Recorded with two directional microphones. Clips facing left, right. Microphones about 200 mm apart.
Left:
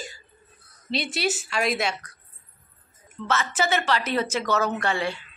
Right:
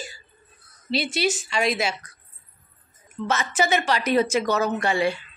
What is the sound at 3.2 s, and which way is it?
A woman's voice, 15° right (ahead or behind).